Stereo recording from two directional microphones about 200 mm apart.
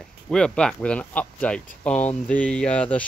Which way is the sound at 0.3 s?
5° left (ahead or behind).